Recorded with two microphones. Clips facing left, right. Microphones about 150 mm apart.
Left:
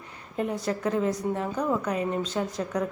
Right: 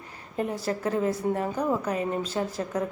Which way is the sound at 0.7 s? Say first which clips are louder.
Even; 40° right (ahead or behind).